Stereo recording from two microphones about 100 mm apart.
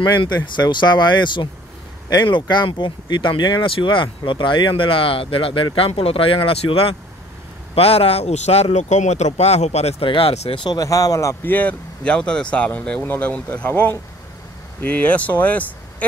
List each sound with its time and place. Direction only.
0.1 s speech: 45° left (ahead or behind); by 7.0 s 70° left (ahead or behind)
7.7 s speech: 80° left
10.5 s speech: 50° left (ahead or behind)
10.8 s speech: 35° left (ahead or behind)
11.4 s speech: 15° left (ahead or behind)